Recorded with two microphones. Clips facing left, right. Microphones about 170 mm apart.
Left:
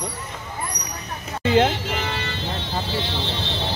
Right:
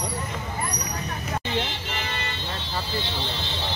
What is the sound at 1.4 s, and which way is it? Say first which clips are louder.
Speech: left 13 dB; 90° left.